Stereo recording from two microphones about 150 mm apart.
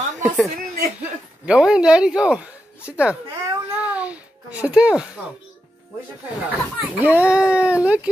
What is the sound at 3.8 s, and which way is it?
Babbling, 10° right (ahead or behind).